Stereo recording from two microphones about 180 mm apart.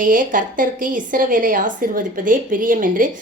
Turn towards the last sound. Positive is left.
turn(degrees=-45)  # may be behind; listen again after turning